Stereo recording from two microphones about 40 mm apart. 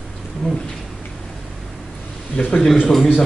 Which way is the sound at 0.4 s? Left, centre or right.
Centre.